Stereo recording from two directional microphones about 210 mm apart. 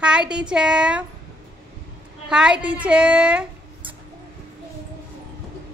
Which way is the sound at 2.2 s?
5° right (ahead or behind).